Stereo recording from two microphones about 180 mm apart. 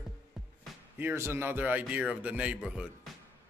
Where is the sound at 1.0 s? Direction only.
15° right (ahead or behind).